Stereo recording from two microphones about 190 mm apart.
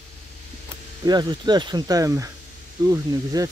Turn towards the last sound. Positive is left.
turn(degrees=-20)  # may be behind; listen again after turning